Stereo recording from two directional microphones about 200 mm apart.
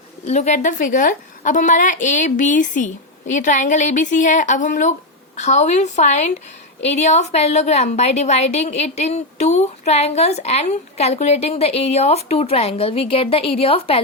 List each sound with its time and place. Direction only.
0.3 s a woman's voice: 35° left (ahead or behind)